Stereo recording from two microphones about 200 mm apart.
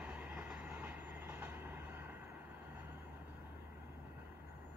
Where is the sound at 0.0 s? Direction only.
5° right (ahead or behind).